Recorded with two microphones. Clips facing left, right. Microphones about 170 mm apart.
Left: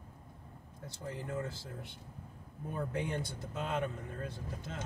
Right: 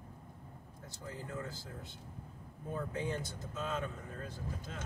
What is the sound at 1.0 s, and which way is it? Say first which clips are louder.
Speech: left 4 dB; 65° left (ahead or behind).